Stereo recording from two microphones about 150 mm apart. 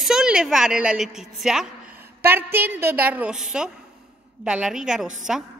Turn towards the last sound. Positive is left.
turn(degrees=-5)  # may be behind; listen again after turning